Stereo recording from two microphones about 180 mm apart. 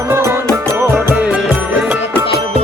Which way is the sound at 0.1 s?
15° right (ahead or behind).